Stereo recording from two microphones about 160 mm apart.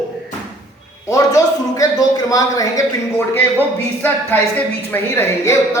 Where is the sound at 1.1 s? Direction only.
20° left (ahead or behind).